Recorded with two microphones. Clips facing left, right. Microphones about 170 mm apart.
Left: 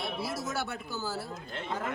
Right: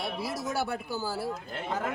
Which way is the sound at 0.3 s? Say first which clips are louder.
Right 4 dB; 15° right (ahead or behind).